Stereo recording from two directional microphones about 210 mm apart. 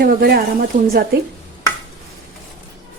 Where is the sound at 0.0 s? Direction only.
45° right (ahead or behind).